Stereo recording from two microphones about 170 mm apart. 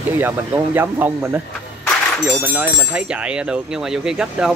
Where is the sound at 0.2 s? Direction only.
10° right (ahead or behind).